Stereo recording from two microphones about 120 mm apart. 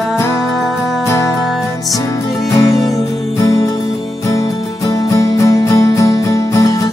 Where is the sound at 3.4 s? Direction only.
30° left (ahead or behind).